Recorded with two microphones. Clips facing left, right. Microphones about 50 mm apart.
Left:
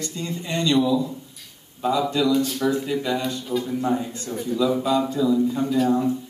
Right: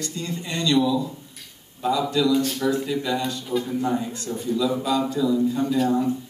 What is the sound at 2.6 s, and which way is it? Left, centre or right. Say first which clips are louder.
Speech: even; centre.